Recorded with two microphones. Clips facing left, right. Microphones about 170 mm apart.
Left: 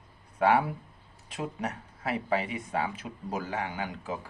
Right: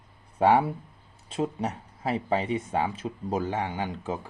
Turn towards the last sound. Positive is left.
turn(degrees=-25)  # may be behind; listen again after turning